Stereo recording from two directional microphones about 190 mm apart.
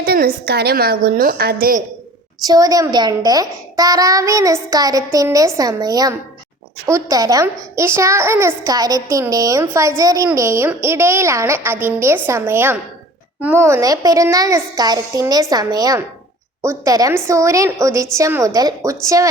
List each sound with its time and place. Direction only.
0.0 s a woman's voice: 55° right (ahead or behind)
2.4 s a child's voice: 20° right (ahead or behind)